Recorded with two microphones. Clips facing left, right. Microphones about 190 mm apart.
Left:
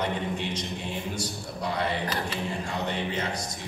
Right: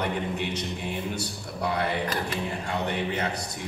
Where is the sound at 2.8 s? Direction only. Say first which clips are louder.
Right 2 dB; 65° right (ahead or behind).